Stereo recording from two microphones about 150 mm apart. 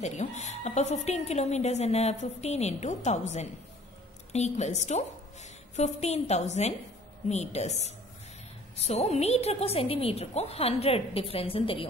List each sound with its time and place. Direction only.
0.0 s a woman's voice: 50° left (ahead or behind)